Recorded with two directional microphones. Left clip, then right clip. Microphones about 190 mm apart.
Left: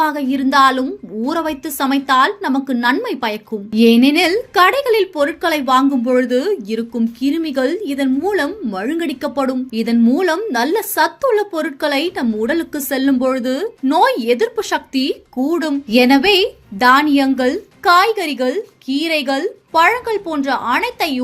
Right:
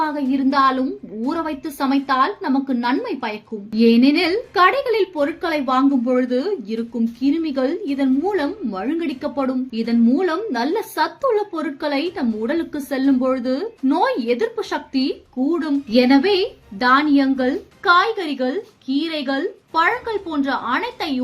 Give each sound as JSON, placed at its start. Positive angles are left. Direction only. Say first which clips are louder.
{"t": 0.0, "sound": "a woman's voice", "louder": "left 4 dB", "side_deg": 25}